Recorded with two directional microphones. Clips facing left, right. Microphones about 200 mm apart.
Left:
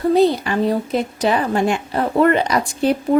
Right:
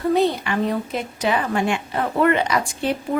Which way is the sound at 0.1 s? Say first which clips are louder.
Left 4 dB; 35° left (ahead or behind).